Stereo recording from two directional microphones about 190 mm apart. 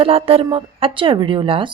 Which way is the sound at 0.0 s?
30° right (ahead or behind).